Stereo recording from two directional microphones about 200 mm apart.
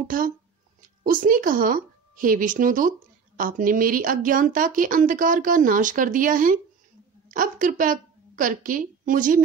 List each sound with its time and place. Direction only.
0.1 s a woman's voice: 40° right (ahead or behind)